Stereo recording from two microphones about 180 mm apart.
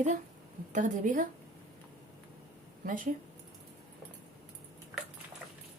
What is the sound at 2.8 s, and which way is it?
Speech, 50° right (ahead or behind).